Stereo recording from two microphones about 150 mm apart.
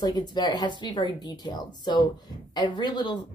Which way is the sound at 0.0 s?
25° left (ahead or behind).